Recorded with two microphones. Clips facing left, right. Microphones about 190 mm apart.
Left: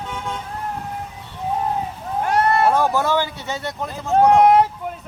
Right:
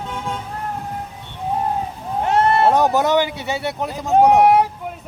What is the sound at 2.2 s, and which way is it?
Speech, 25° right (ahead or behind).